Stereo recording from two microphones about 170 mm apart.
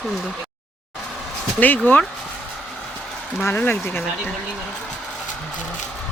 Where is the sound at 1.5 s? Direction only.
10° left (ahead or behind).